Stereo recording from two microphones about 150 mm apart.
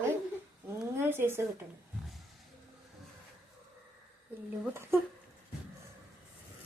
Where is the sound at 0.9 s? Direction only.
15° right (ahead or behind).